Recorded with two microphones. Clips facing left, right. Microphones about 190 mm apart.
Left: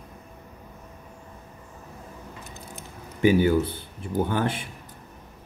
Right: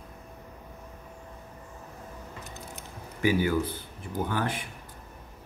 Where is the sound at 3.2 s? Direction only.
25° left (ahead or behind).